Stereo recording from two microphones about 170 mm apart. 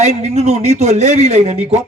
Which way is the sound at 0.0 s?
40° right (ahead or behind).